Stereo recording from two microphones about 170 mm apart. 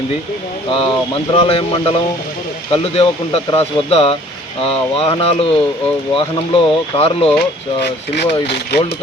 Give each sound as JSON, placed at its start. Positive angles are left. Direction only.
{"t": 0.7, "sound": "speech", "side_deg": 30}
{"t": 8.1, "sound": "speech", "side_deg": 80}